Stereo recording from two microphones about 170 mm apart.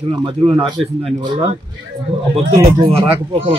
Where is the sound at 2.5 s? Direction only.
30° right (ahead or behind).